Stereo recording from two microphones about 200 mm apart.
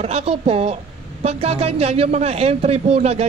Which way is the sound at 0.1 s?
30° right (ahead or behind).